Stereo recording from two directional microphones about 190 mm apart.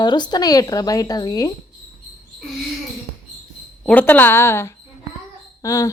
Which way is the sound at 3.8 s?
10° left (ahead or behind).